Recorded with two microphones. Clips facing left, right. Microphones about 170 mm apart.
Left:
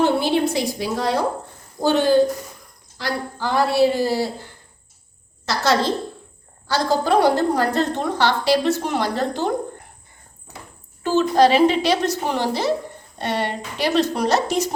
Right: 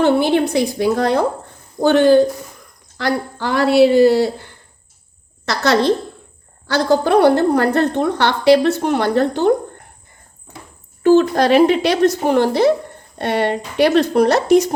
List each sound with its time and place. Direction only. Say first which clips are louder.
0.0 s a woman's voice: right 4 dB; 60° right (ahead or behind)
11.0 s a woman's voice: right 4 dB; 55° right (ahead or behind)